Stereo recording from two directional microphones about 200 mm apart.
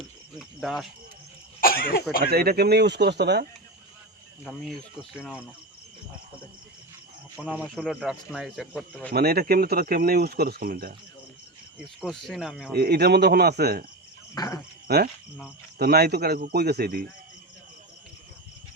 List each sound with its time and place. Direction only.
0.0 s cricket: centre (ahead or behind)
1.6 s speech: 45° left (ahead or behind)
2.3 s speech: 50° right (ahead or behind)
7.4 s speech: 5° left (ahead or behind)
9.1 s speech: 50° right (ahead or behind)
11.9 s speech: centre (ahead or behind)
12.7 s speech: 50° right (ahead or behind)
14.3 s cricket: 20° left (ahead or behind)
14.8 s cricket: 50° right (ahead or behind)
15.8 s speech: 50° right (ahead or behind)